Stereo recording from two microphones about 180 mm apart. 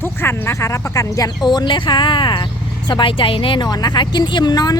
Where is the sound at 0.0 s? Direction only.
10° left (ahead or behind).